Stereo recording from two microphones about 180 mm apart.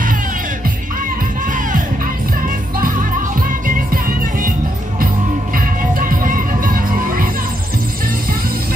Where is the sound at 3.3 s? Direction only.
50° right (ahead or behind).